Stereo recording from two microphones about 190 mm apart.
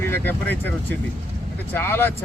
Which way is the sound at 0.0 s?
10° left (ahead or behind).